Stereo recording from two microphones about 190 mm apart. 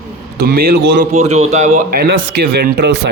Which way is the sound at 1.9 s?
60° right (ahead or behind).